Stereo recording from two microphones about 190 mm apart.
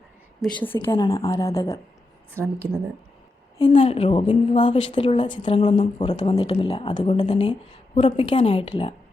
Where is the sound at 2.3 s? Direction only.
15° right (ahead or behind).